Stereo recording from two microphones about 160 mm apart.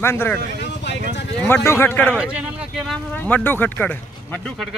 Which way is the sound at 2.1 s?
5° right (ahead or behind).